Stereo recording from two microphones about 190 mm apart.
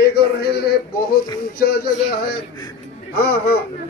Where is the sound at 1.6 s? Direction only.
55° left (ahead or behind).